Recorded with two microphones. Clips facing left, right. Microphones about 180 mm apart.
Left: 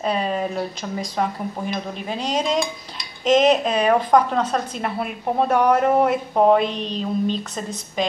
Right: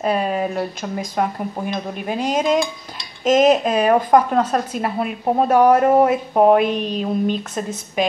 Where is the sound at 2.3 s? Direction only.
5° right (ahead or behind).